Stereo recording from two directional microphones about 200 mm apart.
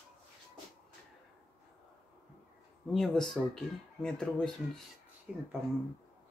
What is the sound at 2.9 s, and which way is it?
Speech, centre (ahead or behind).